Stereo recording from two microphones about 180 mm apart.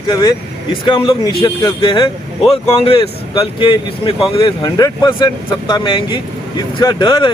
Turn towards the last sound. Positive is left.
turn(degrees=25)  # may be behind; listen again after turning